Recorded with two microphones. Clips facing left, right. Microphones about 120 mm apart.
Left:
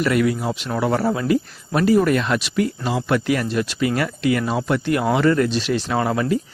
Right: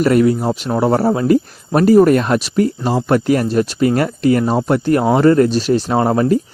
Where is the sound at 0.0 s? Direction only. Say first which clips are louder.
Right 6 dB; 40° right (ahead or behind).